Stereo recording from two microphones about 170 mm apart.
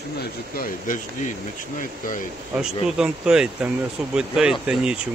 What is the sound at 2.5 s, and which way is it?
Speech, 5° right (ahead or behind).